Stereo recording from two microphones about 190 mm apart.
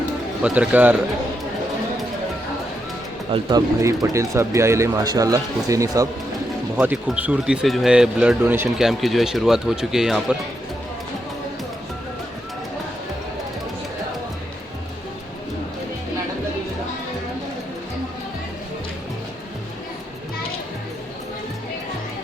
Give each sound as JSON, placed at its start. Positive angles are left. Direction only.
{"t": 0.4, "sound": "speech", "side_deg": -5}
{"t": 3.3, "sound": "speech", "side_deg": -20}